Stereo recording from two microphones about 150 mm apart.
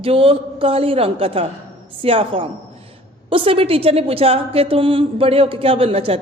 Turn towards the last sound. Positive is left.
turn(degrees=-40)  # may be behind; listen again after turning